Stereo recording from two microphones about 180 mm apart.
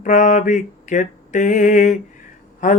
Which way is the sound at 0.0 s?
40° left (ahead or behind).